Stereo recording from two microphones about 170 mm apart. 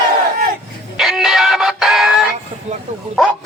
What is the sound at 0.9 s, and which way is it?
Music, centre (ahead or behind).